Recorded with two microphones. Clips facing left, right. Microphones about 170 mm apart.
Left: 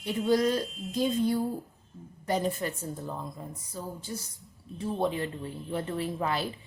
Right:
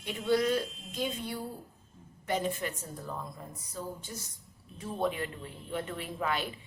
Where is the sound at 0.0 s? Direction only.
40° left (ahead or behind).